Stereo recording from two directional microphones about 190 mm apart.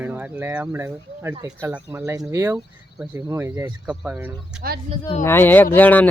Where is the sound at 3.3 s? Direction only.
15° right (ahead or behind).